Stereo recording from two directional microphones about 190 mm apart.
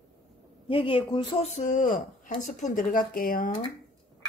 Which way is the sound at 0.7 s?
25° left (ahead or behind).